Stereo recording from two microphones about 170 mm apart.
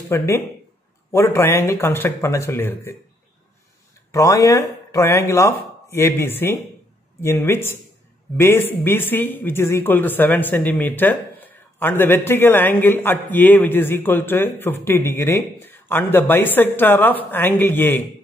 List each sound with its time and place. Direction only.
0.1 s speech: 15° left (ahead or behind)
4.1 s speech: 20° left (ahead or behind)